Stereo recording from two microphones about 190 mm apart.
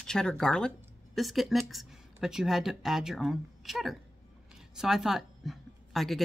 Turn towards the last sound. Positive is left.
turn(degrees=0)  # may be behind; listen again after turning